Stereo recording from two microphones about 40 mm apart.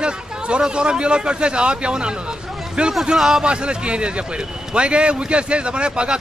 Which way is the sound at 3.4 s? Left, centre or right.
Right.